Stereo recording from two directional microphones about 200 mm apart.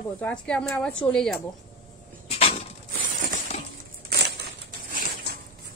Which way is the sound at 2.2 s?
30° left (ahead or behind).